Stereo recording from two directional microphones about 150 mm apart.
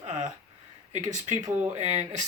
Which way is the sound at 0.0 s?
55° right (ahead or behind).